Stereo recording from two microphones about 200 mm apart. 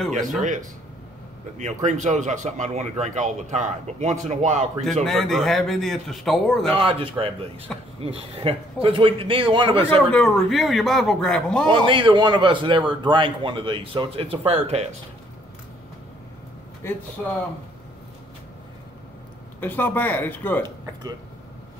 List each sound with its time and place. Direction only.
1.6 s speech: 35° right (ahead or behind)
5.0 s speech: centre (ahead or behind)
6.6 s a man's voice: 30° right (ahead or behind)
9.8 s speech: 5° left (ahead or behind)
11.7 s a man's voice: 25° right (ahead or behind)
17.2 s speech: centre (ahead or behind)
19.6 s speech: 10° left (ahead or behind)